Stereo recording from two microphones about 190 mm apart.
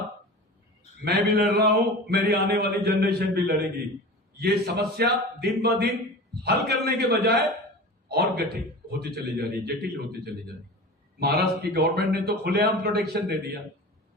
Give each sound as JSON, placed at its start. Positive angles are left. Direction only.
{"t": 1.4, "sound": "a man's voice", "side_deg": -55}
{"t": 11.2, "sound": "a man's voice", "side_deg": -55}